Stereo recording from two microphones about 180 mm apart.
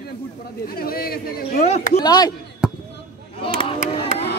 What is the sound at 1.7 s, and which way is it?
Speech, 35° left (ahead or behind).